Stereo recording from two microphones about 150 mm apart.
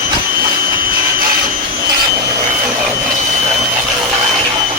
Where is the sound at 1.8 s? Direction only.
20° right (ahead or behind).